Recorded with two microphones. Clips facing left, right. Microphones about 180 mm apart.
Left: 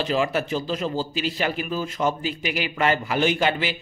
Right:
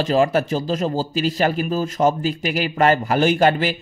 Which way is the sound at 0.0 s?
40° right (ahead or behind).